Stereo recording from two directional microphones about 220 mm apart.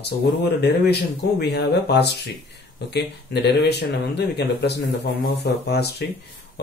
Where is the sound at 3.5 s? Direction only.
50° left (ahead or behind).